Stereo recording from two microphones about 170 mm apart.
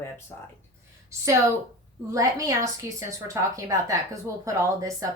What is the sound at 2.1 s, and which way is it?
A woman's voice, 20° right (ahead or behind).